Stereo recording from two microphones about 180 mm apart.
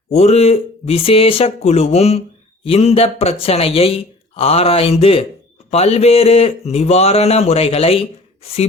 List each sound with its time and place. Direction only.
0.1 s speech: 35° left (ahead or behind)